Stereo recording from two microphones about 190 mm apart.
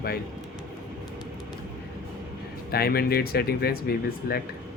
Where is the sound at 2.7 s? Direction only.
55° left (ahead or behind).